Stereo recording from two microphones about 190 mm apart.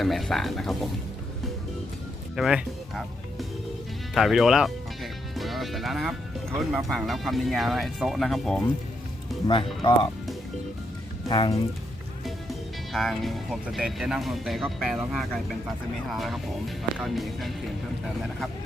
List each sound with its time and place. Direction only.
0.0 s speech: centre (ahead or behind)
2.3 s speech: 5° right (ahead or behind)
4.1 s speech: centre (ahead or behind)
9.5 s speech: 25° left (ahead or behind)
11.3 s speech: 25° left (ahead or behind)
12.9 s speech: centre (ahead or behind)